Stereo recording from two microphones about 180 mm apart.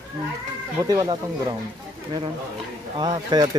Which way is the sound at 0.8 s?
20° right (ahead or behind).